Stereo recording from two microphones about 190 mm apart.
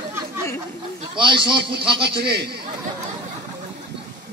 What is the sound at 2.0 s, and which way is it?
Speech, 60° right (ahead or behind).